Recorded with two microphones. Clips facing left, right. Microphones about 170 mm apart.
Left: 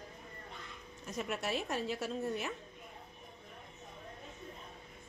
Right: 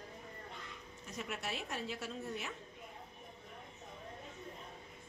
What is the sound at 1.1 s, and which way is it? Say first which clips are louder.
A woman's voice: left 6 dB; 45° left (ahead or behind).